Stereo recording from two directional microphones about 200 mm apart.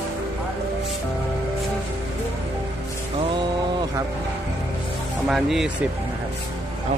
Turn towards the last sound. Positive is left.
turn(degrees=0)  # may be behind; listen again after turning